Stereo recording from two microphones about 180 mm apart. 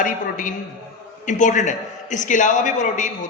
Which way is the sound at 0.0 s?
45° left (ahead or behind).